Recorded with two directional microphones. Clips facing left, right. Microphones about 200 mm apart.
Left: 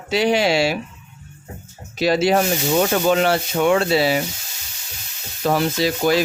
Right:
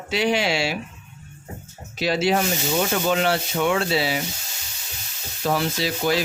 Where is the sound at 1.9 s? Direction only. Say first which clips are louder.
Left 4 dB; 40° left (ahead or behind).